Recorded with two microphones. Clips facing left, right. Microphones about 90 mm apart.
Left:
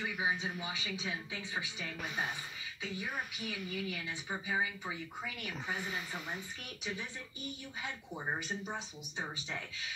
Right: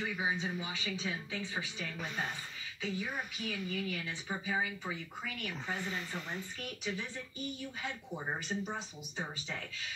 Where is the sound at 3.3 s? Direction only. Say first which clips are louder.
Right 2 dB; 10° left (ahead or behind).